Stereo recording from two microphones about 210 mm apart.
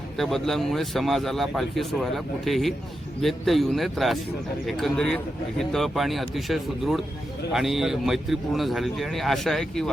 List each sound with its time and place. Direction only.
0.2 s speech: centre (ahead or behind)